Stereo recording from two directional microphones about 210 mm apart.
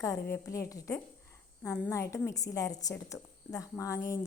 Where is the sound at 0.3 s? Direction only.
15° left (ahead or behind).